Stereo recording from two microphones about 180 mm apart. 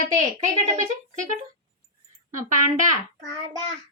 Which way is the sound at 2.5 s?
45° right (ahead or behind).